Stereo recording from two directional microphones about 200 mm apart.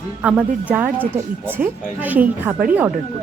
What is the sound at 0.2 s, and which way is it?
A woman's voice, 5° right (ahead or behind).